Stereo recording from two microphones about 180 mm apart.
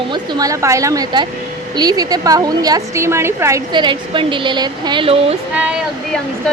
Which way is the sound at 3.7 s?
25° right (ahead or behind).